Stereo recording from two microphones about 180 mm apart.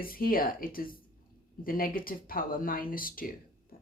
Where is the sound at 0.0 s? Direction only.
55° left (ahead or behind).